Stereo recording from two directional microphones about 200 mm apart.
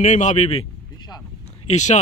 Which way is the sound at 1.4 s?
35° left (ahead or behind).